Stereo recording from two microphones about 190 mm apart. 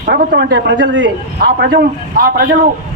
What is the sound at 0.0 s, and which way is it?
A man's voice, 50° right (ahead or behind).